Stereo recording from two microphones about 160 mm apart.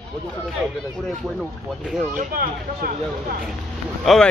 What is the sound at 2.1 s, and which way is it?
Speech, 65° right (ahead or behind).